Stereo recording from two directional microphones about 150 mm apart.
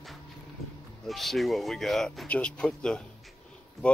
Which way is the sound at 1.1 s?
Centre (ahead or behind).